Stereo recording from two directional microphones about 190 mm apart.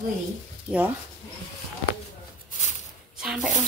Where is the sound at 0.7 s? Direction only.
10° right (ahead or behind).